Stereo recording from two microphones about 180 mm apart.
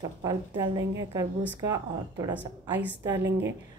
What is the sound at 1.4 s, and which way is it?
Speech, 10° right (ahead or behind).